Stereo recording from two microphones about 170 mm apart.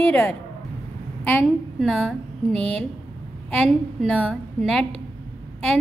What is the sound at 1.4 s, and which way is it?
A woman's voice, centre (ahead or behind).